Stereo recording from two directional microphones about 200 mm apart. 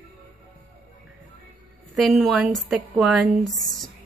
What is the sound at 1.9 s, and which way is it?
Speech, centre (ahead or behind).